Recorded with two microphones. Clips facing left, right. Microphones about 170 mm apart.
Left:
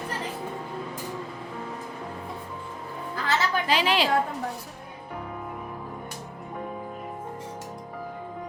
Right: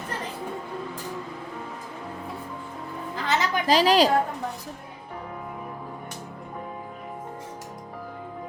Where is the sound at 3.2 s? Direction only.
20° right (ahead or behind).